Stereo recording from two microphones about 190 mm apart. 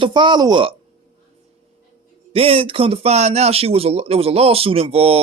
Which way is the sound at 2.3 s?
30° right (ahead or behind).